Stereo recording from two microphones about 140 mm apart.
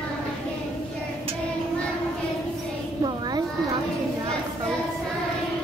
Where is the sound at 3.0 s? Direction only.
30° right (ahead or behind).